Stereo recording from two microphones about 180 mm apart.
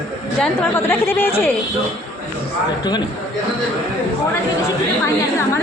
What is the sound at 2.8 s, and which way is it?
Speech, 25° left (ahead or behind).